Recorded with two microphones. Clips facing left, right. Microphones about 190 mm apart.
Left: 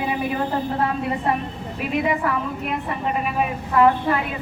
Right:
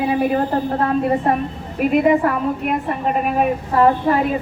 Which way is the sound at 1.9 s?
45° right (ahead or behind).